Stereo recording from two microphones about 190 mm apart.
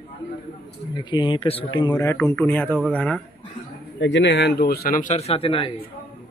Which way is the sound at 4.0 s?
70° left (ahead or behind).